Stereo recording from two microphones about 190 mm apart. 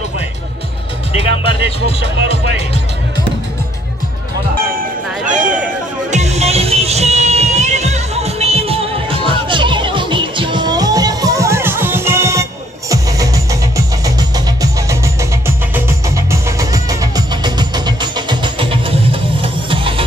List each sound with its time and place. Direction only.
2.0 s speech: 65° right (ahead or behind)
4.6 s a sound: 50° right (ahead or behind)
5.3 s cat: 5° right (ahead or behind)
6.1 s music: 35° right (ahead or behind); by 15.0 s 20° right (ahead or behind)
16.3 s music: 15° right (ahead or behind)